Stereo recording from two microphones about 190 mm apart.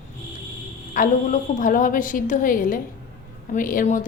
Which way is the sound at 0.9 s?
40° left (ahead or behind).